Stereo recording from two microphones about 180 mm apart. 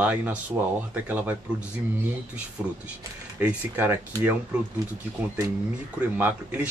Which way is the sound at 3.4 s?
10° right (ahead or behind).